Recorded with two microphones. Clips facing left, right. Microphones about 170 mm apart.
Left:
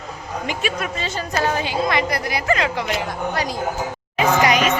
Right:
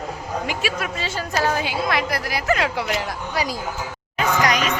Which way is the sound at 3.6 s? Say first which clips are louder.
Left 5 dB; 50° left (ahead or behind).